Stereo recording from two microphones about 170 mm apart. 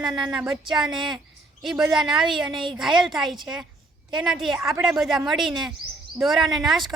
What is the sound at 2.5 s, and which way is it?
Speech, 30° right (ahead or behind).